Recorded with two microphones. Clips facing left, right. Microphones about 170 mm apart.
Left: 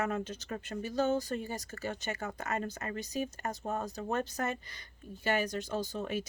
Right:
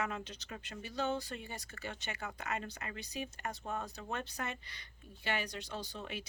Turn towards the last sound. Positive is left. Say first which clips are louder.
# left 8 dB
turn(degrees=45)  # may be behind; listen again after turning